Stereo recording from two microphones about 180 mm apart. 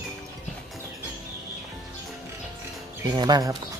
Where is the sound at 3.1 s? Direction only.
20° right (ahead or behind).